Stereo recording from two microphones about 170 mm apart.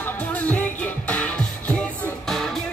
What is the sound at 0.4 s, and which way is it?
Music, 10° left (ahead or behind).